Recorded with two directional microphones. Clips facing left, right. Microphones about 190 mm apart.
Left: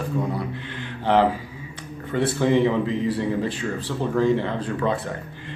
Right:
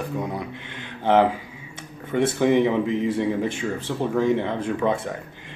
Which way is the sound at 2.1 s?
15° right (ahead or behind).